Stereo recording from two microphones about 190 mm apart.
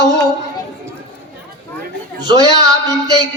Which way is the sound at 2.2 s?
20° right (ahead or behind).